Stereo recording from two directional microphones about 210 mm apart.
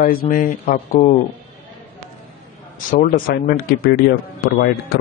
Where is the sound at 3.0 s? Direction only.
45° left (ahead or behind).